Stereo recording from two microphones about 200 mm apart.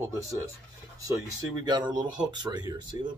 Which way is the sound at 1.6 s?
20° right (ahead or behind).